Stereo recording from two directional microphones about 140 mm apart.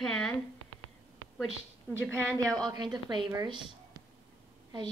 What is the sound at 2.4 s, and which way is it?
Speech, 25° right (ahead or behind).